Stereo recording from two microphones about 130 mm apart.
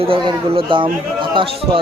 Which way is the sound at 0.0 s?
40° right (ahead or behind).